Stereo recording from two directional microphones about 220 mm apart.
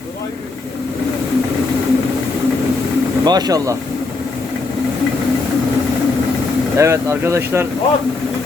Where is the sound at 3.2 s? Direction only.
20° right (ahead or behind).